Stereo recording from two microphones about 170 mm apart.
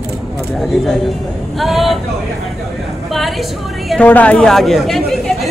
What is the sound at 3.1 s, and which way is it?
A woman's voice, centre (ahead or behind).